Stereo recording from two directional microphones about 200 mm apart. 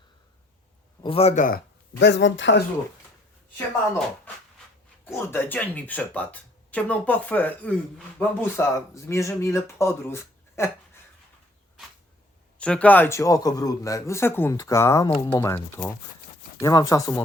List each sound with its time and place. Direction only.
1.0 s speech: 30° left (ahead or behind)
2.0 s speech: 60° left (ahead or behind)
5.0 s speech: 10° left (ahead or behind)
12.5 s speech: 5° left (ahead or behind)